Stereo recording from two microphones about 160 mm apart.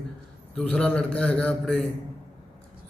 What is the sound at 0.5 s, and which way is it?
A man's voice, 5° left (ahead or behind).